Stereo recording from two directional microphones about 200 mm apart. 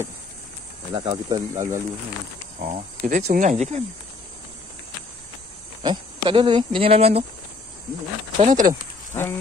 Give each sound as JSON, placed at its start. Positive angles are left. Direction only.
{"t": 0.9, "sound": "speech", "side_deg": -20}
{"t": 2.6, "sound": "speech", "side_deg": -40}
{"t": 5.8, "sound": "speech", "side_deg": -25}
{"t": 8.4, "sound": "speech", "side_deg": -40}
{"t": 9.1, "sound": "speech", "side_deg": 10}